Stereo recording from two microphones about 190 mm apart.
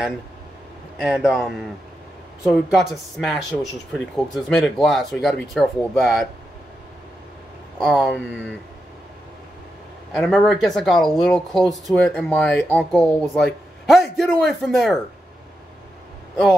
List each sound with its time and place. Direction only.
0.9 s speech: 5° right (ahead or behind)
7.8 s speech: centre (ahead or behind)
10.1 s speech: centre (ahead or behind)